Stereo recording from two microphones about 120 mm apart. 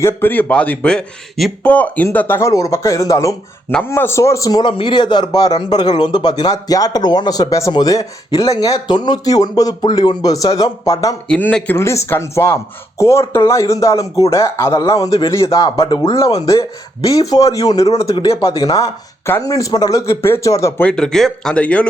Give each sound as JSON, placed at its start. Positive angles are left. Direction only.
{"t": 0.0, "sound": "a man's voice", "side_deg": 15}
{"t": 2.5, "sound": "speech", "side_deg": 30}
{"t": 4.6, "sound": "a man's voice", "side_deg": 45}
{"t": 11.3, "sound": "a man's voice", "side_deg": 10}
{"t": 20.8, "sound": "a man's voice", "side_deg": 5}